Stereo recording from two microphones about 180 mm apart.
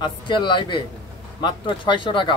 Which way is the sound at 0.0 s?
25° left (ahead or behind).